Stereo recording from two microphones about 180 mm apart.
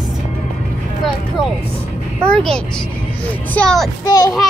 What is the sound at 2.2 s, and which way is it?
A child's voice, 5° left (ahead or behind).